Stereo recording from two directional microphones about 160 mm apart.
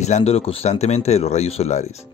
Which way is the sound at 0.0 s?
40° left (ahead or behind).